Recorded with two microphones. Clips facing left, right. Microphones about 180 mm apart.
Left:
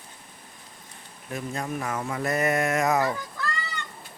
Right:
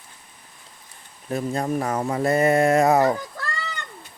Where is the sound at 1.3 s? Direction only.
35° right (ahead or behind).